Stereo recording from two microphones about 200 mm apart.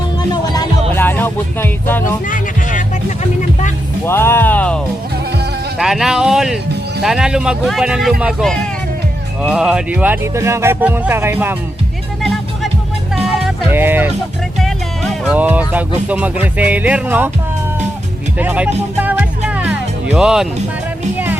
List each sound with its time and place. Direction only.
0.2 s music: 20° left (ahead or behind)
0.9 s speech: 10° left (ahead or behind)
4.0 s speech: 10° left (ahead or behind)
5.8 s speech: centre (ahead or behind)
13.4 s music: 10° right (ahead or behind)
14.6 s speech: centre (ahead or behind)
18.3 s speech: 5° right (ahead or behind)
18.9 s music: 10° right (ahead or behind)
20.1 s speech: 5° right (ahead or behind)